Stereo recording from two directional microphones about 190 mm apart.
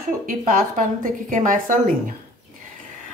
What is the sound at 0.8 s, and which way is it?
Speech, 45° right (ahead or behind).